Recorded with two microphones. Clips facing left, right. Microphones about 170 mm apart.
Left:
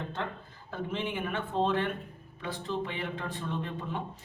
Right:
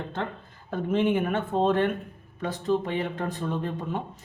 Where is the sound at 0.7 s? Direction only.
50° right (ahead or behind).